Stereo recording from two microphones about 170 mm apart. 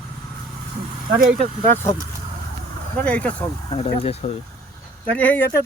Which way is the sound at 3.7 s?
35° left (ahead or behind).